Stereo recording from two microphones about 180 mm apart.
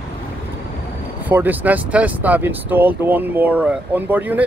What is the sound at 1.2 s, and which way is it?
Speech, 10° right (ahead or behind).